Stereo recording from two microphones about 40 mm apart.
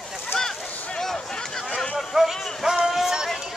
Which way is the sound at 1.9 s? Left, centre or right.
Centre.